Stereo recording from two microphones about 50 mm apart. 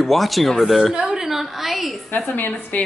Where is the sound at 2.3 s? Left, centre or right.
Left.